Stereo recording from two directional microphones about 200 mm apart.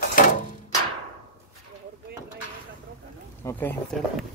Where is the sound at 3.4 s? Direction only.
10° left (ahead or behind).